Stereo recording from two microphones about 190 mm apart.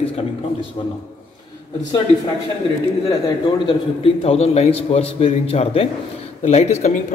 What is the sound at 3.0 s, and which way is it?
Speech, 20° left (ahead or behind).